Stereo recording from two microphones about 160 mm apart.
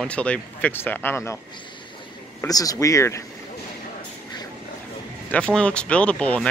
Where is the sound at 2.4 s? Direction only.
20° left (ahead or behind).